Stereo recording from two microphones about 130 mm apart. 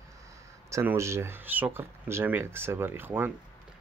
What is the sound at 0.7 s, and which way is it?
Speech, 20° right (ahead or behind).